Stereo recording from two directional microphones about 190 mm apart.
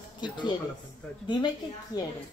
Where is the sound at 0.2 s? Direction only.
25° left (ahead or behind).